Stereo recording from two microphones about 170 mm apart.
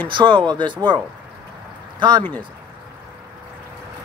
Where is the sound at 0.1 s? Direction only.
25° right (ahead or behind).